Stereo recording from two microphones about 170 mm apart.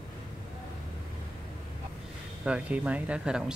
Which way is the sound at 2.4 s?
10° right (ahead or behind).